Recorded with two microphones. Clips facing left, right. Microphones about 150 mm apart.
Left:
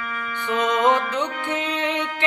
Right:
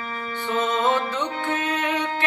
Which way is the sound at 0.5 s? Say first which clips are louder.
Left 3 dB; 20° left (ahead or behind).